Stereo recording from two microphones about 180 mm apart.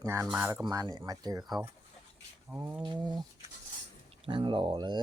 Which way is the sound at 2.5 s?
10° right (ahead or behind).